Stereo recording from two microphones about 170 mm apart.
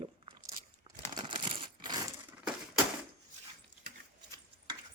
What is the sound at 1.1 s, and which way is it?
Coin, 30° right (ahead or behind).